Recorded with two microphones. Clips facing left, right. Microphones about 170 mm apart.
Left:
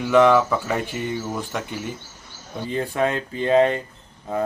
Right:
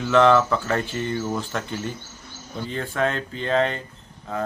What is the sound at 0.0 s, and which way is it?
Speech, 10° left (ahead or behind).